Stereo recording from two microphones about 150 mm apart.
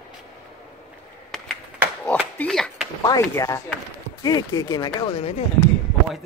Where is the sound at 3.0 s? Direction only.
20° left (ahead or behind); by 5.4 s 40° left (ahead or behind).